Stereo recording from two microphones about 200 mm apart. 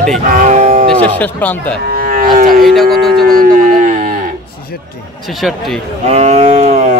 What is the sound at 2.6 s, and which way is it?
Speech, centre (ahead or behind).